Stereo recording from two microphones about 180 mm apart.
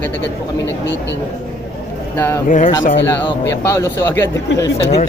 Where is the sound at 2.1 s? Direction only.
15° left (ahead or behind).